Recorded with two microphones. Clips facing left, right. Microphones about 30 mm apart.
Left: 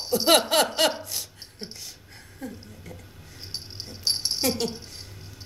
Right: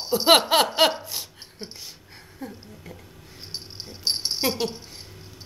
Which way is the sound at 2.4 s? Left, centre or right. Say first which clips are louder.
Even; right.